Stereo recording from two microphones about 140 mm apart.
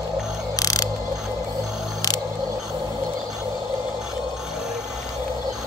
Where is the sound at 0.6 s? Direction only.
25° left (ahead or behind).